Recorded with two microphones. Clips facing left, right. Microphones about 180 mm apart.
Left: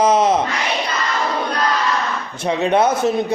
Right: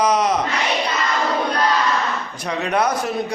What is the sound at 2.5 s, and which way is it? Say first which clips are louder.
Speech: left 5 dB; 25° left (ahead or behind).